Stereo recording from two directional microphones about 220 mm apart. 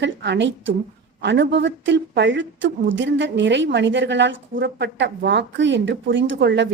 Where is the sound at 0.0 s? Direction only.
50° right (ahead or behind).